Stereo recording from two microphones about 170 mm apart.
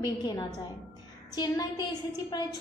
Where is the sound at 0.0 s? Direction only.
25° left (ahead or behind).